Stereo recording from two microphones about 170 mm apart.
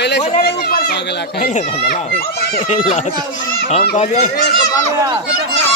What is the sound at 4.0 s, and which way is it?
Speech, 45° left (ahead or behind).